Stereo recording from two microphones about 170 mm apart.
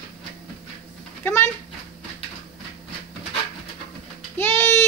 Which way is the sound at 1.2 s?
15° left (ahead or behind).